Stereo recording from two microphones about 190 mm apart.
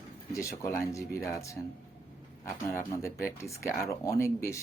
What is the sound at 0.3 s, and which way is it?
Speech, 15° left (ahead or behind).